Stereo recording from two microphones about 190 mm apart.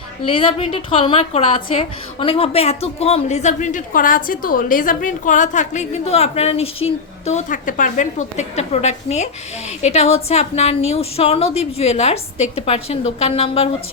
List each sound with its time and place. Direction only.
0.3 s a woman's voice: 30° left (ahead or behind)